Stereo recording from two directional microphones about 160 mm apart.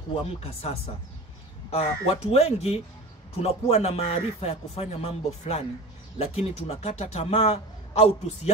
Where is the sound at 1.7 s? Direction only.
40° left (ahead or behind).